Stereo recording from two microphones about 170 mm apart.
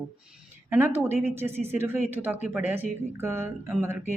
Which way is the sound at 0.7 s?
15° right (ahead or behind).